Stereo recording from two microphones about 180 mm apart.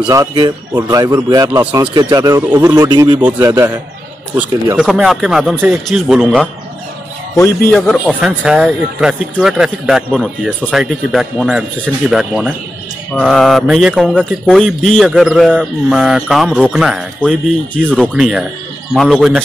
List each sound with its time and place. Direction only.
0.1 s speech: 20° right (ahead or behind)
4.4 s speech: 5° right (ahead or behind)
7.3 s speech: 15° left (ahead or behind)
7.7 s speech: 5° left (ahead or behind)